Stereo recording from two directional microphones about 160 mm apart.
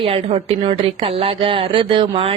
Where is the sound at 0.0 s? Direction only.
35° right (ahead or behind).